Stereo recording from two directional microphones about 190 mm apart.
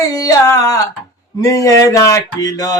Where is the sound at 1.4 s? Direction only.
15° left (ahead or behind).